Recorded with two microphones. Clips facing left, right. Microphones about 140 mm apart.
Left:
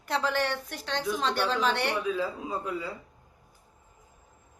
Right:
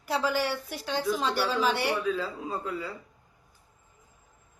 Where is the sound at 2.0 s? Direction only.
15° left (ahead or behind).